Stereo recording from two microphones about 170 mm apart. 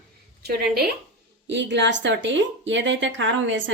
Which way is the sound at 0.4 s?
65° right (ahead or behind).